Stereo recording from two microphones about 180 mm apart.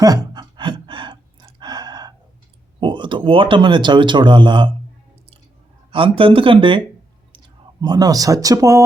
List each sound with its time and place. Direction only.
0.0 s a sound: 20° right (ahead or behind)
2.8 s speech: 25° right (ahead or behind)
5.9 s speech: 30° right (ahead or behind)